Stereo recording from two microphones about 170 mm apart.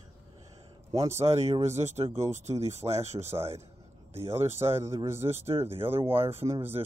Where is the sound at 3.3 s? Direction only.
15° right (ahead or behind).